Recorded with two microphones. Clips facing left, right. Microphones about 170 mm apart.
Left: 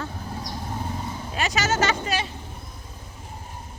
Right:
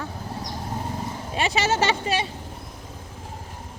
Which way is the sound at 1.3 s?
30° right (ahead or behind).